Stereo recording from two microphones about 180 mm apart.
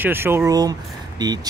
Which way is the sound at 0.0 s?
10° right (ahead or behind).